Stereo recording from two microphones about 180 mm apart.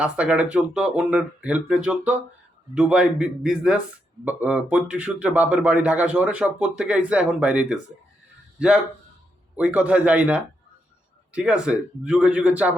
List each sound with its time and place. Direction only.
0.0 s a man's voice: 5° right (ahead or behind)